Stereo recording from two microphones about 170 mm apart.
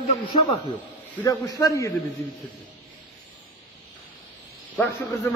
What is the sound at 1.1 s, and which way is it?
Speech, 20° left (ahead or behind).